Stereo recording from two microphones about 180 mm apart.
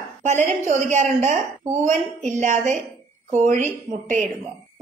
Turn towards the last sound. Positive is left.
turn(degrees=-45)  # may be behind; listen again after turning